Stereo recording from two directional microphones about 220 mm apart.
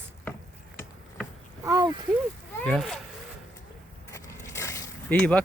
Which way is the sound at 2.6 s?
Centre (ahead or behind).